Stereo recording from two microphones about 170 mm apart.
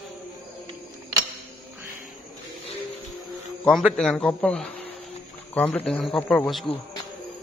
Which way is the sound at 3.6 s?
Centre (ahead or behind).